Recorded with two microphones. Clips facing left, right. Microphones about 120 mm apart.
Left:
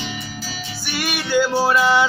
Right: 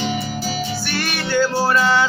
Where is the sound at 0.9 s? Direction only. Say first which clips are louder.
Left 3 dB; 10° left (ahead or behind).